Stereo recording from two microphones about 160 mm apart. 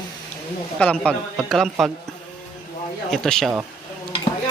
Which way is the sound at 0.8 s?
5° left (ahead or behind).